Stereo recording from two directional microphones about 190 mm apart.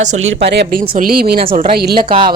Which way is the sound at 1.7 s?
55° right (ahead or behind).